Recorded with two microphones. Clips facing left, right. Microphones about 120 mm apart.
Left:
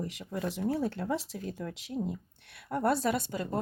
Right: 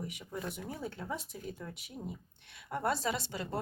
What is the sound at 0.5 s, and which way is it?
Speech, 75° left (ahead or behind).